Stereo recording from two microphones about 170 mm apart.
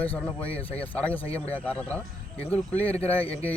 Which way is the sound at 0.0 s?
10° left (ahead or behind).